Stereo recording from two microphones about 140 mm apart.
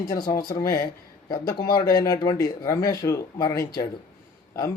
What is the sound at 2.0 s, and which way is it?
Speech, 30° left (ahead or behind).